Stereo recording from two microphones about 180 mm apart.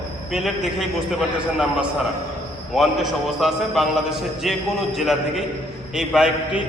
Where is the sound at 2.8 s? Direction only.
Centre (ahead or behind).